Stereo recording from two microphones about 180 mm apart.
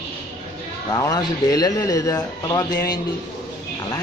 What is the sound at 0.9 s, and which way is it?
Speech, 20° left (ahead or behind).